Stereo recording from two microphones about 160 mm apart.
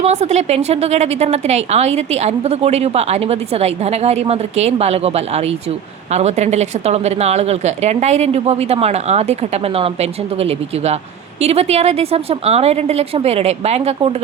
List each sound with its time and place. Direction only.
0.0 s a woman's voice: 45° right (ahead or behind)